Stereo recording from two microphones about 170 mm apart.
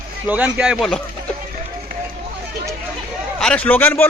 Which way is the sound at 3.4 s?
5° left (ahead or behind).